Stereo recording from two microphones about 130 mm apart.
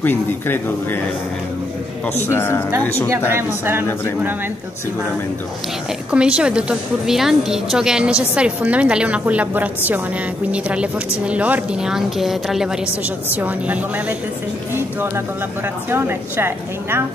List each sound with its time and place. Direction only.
0.0 s speech: 15° left (ahead or behind)
2.2 s speech: 20° left (ahead or behind)
3.3 s a woman's voice: 15° right (ahead or behind)
6.1 s a woman's voice: 5° right (ahead or behind)
13.3 s a woman's voice: 15° right (ahead or behind)